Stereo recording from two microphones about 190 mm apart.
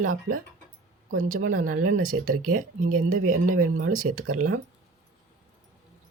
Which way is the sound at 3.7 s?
90° right.